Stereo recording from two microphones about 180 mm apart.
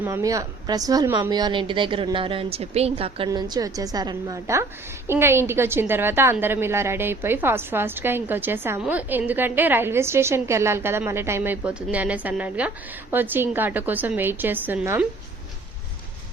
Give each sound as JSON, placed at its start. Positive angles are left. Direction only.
{"t": 0.0, "sound": "speech", "side_deg": -15}
{"t": 3.2, "sound": "a woman's voice", "side_deg": -20}